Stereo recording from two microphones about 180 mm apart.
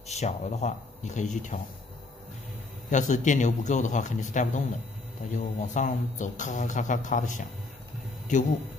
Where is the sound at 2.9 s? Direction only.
45° left (ahead or behind).